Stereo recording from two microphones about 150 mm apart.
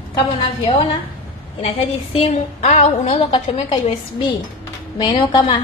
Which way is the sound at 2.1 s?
45° left (ahead or behind).